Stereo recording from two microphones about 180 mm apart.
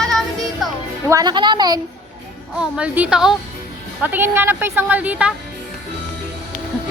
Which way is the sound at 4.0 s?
10° right (ahead or behind).